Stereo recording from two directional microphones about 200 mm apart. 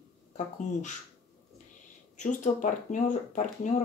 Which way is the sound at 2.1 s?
35° left (ahead or behind).